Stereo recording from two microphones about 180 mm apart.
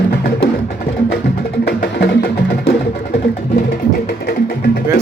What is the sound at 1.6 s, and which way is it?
Music, 65° left (ahead or behind).